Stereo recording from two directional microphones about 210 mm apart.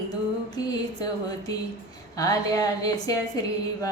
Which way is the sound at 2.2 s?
15° left (ahead or behind).